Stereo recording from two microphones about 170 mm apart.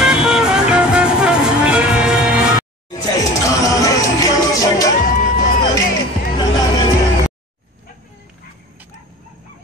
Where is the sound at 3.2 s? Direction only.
20° left (ahead or behind).